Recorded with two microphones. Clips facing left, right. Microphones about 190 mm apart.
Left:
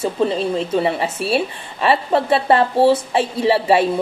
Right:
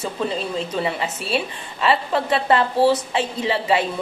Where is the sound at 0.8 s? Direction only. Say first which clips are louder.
Left 5 dB; 30° left (ahead or behind).